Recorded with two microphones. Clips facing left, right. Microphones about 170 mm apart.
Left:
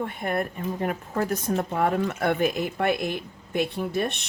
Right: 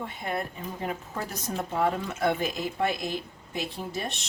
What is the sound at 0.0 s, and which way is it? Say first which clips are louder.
Speech: left 5 dB; 55° left (ahead or behind).